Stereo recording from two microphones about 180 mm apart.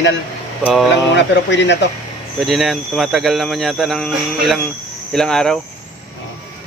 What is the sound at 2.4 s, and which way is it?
Speech, centre (ahead or behind).